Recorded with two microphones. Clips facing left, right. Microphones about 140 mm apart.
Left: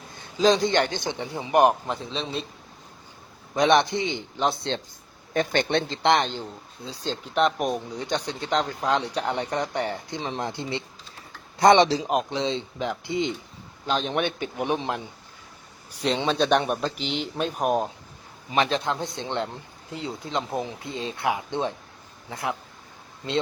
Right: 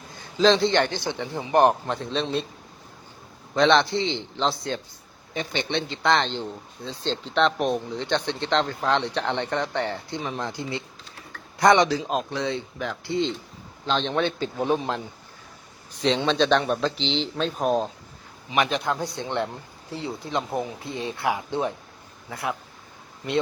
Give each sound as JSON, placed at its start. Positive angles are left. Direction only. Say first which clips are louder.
{"t": 0.3, "sound": "a man's voice", "louder": "right 1 dB", "side_deg": 10}
{"t": 3.5, "sound": "a man's voice", "louder": "right 1 dB", "side_deg": 15}
{"t": 5.3, "sound": "a man's voice", "louder": "left 4 dB", "side_deg": 50}
{"t": 6.0, "sound": "speech", "louder": "even", "side_deg": 20}
{"t": 6.8, "sound": "a man's voice", "louder": "right 2 dB", "side_deg": 10}
{"t": 18.5, "sound": "speech", "louder": "even", "side_deg": 30}